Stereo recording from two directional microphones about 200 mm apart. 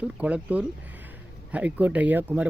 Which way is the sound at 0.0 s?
5° right (ahead or behind).